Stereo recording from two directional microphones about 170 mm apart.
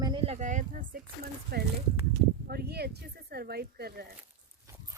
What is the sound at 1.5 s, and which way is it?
Speech, 70° right (ahead or behind).